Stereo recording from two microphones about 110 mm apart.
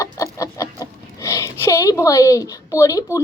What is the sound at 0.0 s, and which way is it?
Chicken, 30° left (ahead or behind).